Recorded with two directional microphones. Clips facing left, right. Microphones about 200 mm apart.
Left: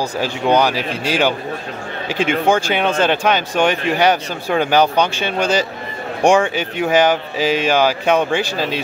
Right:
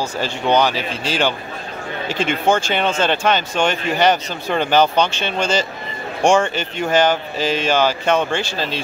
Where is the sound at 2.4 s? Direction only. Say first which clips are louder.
Right 1 dB; 10° left (ahead or behind).